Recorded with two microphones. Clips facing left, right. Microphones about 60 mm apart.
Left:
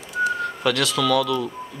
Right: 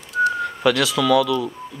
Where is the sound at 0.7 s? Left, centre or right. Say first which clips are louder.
Right 2 dB; centre.